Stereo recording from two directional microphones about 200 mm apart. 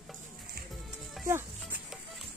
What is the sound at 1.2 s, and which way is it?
Music, 10° right (ahead or behind).